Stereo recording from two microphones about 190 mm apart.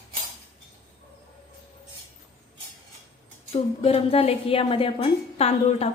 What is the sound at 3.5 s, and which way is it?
A woman's voice, 30° left (ahead or behind).